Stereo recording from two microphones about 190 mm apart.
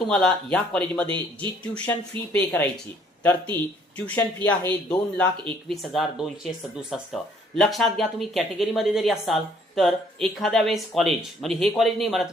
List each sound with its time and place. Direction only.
0.1 s speech: 5° left (ahead or behind)
1.0 s speech: 25° right (ahead or behind)
1.7 s speech: 5° left (ahead or behind)